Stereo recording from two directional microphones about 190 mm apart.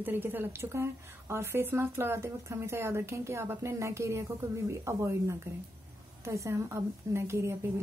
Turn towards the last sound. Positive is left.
turn(degrees=-15)  # may be behind; listen again after turning